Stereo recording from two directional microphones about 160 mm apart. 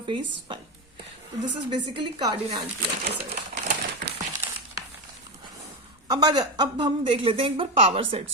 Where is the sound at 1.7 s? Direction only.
30° right (ahead or behind).